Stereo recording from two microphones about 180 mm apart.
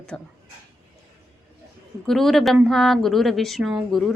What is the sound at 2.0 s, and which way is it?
A woman's voice, centre (ahead or behind).